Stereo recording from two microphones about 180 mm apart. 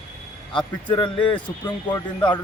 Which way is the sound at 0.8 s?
25° left (ahead or behind).